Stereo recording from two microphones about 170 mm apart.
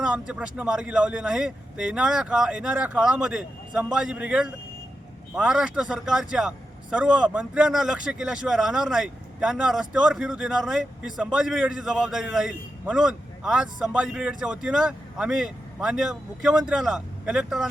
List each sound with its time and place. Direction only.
0.0 s speech: 5° right (ahead or behind)